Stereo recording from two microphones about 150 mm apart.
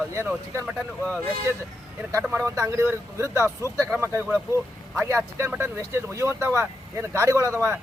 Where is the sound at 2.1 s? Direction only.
20° right (ahead or behind).